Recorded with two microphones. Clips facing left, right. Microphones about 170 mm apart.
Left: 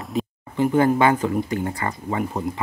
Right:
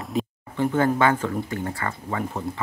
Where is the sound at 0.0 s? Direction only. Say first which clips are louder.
Left 1 dB; centre (ahead or behind).